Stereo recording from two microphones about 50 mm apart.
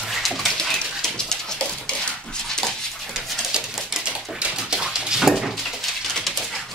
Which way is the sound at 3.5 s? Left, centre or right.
Centre.